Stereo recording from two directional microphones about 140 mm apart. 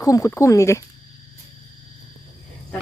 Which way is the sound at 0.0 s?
20° left (ahead or behind).